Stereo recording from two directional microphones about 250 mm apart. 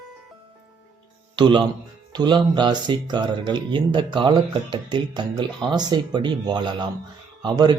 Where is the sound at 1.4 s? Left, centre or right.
Centre.